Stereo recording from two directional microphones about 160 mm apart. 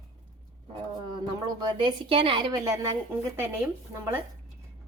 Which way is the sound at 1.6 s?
30° right (ahead or behind).